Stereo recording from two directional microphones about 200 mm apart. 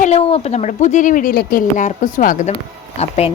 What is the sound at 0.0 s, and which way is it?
A woman's voice, 30° left (ahead or behind).